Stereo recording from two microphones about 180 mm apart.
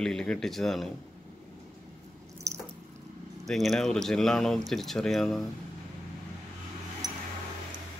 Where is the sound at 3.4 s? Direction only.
Centre (ahead or behind).